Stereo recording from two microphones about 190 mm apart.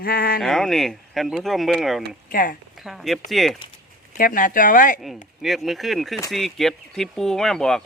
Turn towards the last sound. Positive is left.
turn(degrees=5)  # may be behind; listen again after turning